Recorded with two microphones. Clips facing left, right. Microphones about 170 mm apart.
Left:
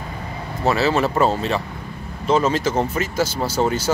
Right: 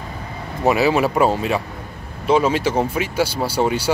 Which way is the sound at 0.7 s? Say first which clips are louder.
Right 2 dB; 15° right (ahead or behind).